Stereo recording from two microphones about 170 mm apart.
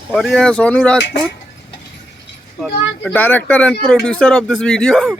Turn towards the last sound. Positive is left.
turn(degrees=5)  # may be behind; listen again after turning